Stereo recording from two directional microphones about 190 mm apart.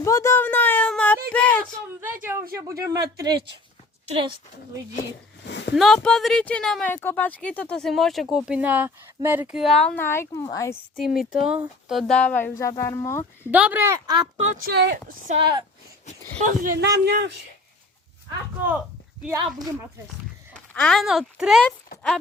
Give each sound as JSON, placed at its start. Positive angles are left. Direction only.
{"t": 0.0, "sound": "a sound", "side_deg": 15}
{"t": 2.2, "sound": "speech", "side_deg": -15}
{"t": 5.5, "sound": "speech", "side_deg": 65}
{"t": 5.7, "sound": "speech", "side_deg": 0}
{"t": 11.3, "sound": "speech", "side_deg": -5}
{"t": 13.4, "sound": "a woman's voice", "side_deg": -10}
{"t": 14.3, "sound": "a woman's voice", "side_deg": -40}
{"t": 14.7, "sound": "speech", "side_deg": -60}
{"t": 15.3, "sound": "speech", "side_deg": -25}
{"t": 16.4, "sound": "speech", "side_deg": -50}
{"t": 19.5, "sound": "speech", "side_deg": -20}
{"t": 20.5, "sound": "speech", "side_deg": 5}